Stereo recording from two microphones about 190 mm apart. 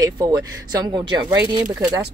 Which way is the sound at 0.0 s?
20° right (ahead or behind).